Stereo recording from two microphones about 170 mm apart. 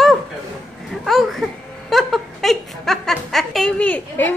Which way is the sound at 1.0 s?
Centre (ahead or behind).